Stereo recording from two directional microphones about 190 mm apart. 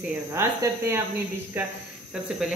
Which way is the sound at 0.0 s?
10° right (ahead or behind).